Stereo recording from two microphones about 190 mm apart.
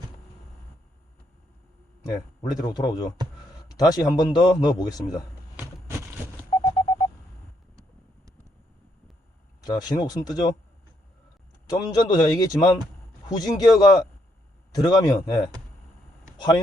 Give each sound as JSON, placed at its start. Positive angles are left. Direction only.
{"t": 2.0, "sound": "a man's voice", "side_deg": 20}
{"t": 6.5, "sound": "a sound", "side_deg": 15}
{"t": 7.8, "sound": "vehicle", "side_deg": -15}
{"t": 9.6, "sound": "a man's voice", "side_deg": 20}
{"t": 11.7, "sound": "a man's voice", "side_deg": 20}